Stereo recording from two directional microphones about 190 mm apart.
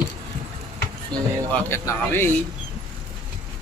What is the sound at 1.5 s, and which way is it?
Speech, 10° left (ahead or behind).